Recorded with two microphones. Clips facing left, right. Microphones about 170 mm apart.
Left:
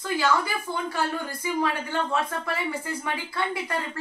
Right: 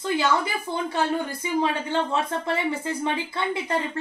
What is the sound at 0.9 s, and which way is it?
A woman's voice, 20° right (ahead or behind).